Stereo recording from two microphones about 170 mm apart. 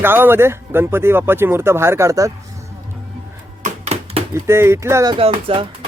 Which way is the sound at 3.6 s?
40° right (ahead or behind).